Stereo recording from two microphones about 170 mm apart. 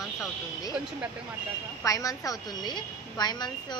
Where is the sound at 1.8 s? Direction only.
20° left (ahead or behind).